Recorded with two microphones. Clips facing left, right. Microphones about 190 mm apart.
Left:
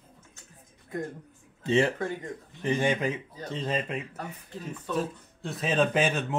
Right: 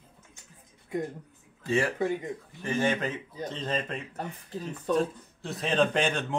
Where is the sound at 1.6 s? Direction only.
20° left (ahead or behind).